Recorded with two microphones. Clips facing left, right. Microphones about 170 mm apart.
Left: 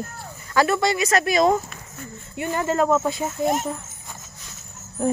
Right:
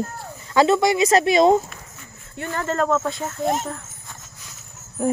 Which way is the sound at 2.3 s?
15° left (ahead or behind).